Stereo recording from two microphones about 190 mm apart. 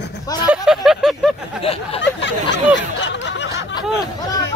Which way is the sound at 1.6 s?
30° left (ahead or behind).